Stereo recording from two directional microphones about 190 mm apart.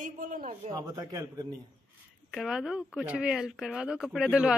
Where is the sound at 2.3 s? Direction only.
5° right (ahead or behind).